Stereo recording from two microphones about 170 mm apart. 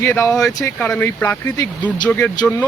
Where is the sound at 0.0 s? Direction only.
15° left (ahead or behind).